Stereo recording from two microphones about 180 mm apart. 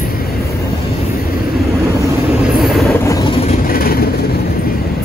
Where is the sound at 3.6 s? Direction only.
55° left (ahead or behind).